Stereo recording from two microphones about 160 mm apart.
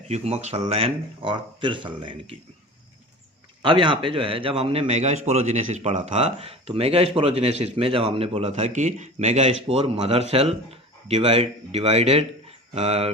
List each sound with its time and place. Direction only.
0.1 s a man's voice: 40° right (ahead or behind)
3.6 s a man's voice: 30° right (ahead or behind)